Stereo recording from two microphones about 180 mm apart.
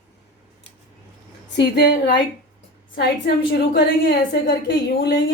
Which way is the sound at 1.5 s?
70° left (ahead or behind).